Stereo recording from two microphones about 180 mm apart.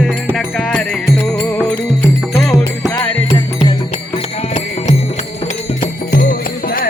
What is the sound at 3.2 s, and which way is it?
Music, 25° left (ahead or behind).